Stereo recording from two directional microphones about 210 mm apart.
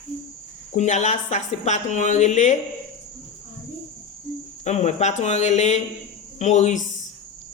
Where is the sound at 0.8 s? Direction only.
35° left (ahead or behind).